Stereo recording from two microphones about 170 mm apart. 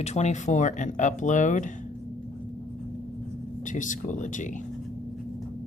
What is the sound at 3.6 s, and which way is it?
Speech, 50° left (ahead or behind).